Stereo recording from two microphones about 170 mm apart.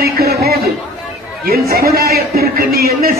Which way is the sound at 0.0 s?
65° right (ahead or behind).